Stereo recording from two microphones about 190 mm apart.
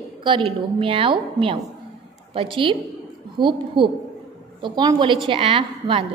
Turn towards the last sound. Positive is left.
turn(degrees=-30)  # may be behind; listen again after turning